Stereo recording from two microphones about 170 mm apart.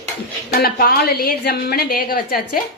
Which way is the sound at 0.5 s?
65° left (ahead or behind).